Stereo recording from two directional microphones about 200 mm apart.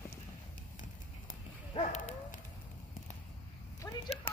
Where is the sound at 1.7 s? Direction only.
35° left (ahead or behind).